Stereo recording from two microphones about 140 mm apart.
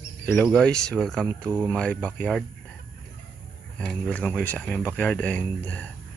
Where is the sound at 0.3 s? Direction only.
5° left (ahead or behind).